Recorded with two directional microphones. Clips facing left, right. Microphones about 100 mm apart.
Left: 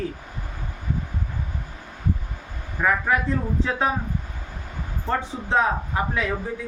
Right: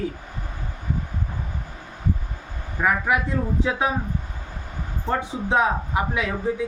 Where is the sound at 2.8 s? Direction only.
10° right (ahead or behind).